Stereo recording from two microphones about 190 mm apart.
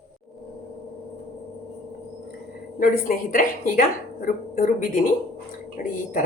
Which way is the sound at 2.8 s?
45° left (ahead or behind).